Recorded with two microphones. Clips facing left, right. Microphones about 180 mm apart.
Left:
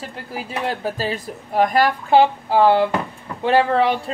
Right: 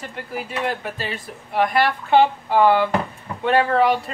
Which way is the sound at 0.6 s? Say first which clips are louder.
Left 3 dB; 35° left (ahead or behind).